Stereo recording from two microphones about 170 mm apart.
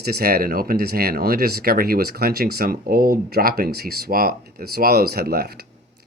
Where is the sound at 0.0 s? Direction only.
65° right (ahead or behind).